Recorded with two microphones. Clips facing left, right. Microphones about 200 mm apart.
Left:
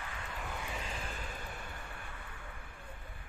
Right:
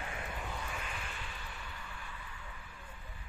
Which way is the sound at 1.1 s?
45° left (ahead or behind).